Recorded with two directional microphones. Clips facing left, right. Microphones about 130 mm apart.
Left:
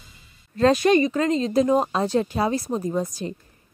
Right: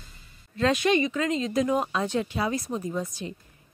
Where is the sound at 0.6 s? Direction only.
40° left (ahead or behind).